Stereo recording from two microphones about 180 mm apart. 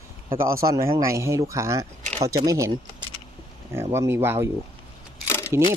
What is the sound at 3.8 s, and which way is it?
Speech, 15° right (ahead or behind).